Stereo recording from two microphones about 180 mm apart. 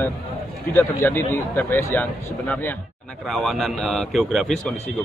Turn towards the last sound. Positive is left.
turn(degrees=0)  # may be behind; listen again after turning